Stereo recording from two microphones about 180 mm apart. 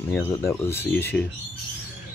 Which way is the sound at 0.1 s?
15° left (ahead or behind).